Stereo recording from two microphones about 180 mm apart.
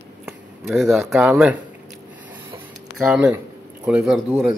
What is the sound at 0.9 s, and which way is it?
Speech, centre (ahead or behind).